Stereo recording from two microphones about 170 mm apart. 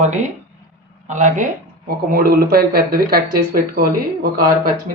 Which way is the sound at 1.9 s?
60° right (ahead or behind).